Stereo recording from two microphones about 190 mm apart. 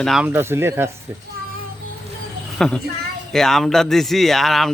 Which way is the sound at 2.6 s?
5° left (ahead or behind).